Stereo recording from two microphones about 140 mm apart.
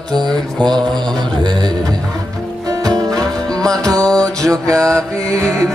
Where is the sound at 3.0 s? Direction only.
25° right (ahead or behind).